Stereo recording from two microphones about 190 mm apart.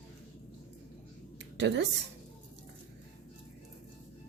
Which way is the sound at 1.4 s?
65° right (ahead or behind).